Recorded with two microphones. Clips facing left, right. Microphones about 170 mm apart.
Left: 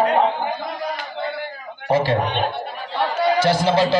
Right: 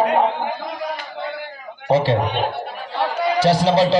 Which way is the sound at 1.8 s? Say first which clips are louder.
Right 2 dB; 30° right (ahead or behind).